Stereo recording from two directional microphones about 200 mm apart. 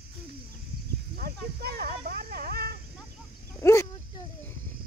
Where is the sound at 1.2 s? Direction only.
50° right (ahead or behind).